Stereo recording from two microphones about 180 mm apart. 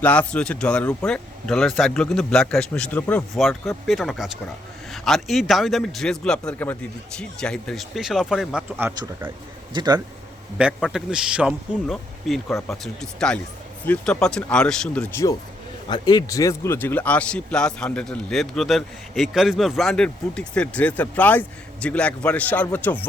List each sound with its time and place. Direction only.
0.0 s speech: 10° left (ahead or behind)
9.7 s speech: 25° right (ahead or behind)
10.6 s speech: 5° right (ahead or behind)
15.9 s a man's voice: 25° left (ahead or behind)